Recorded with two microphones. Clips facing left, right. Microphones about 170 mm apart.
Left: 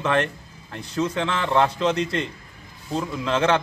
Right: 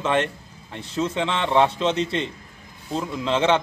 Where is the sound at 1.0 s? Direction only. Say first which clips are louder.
Right 1 dB; 20° right (ahead or behind).